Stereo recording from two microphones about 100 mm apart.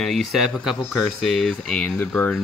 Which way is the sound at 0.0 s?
Centre (ahead or behind).